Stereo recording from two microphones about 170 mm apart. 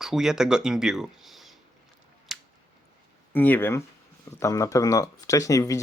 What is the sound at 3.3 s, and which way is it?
Speech, 10° left (ahead or behind).